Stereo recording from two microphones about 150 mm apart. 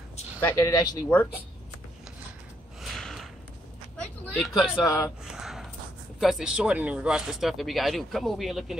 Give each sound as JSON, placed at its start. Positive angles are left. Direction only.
{"t": 0.4, "sound": "speech", "side_deg": 15}
{"t": 0.7, "sound": "speech", "side_deg": 25}
{"t": 1.1, "sound": "speech", "side_deg": 10}
{"t": 2.8, "sound": "a sound", "side_deg": 0}
{"t": 4.8, "sound": "speech", "side_deg": 20}
{"t": 5.2, "sound": "a sound", "side_deg": -5}
{"t": 6.1, "sound": "speech", "side_deg": -5}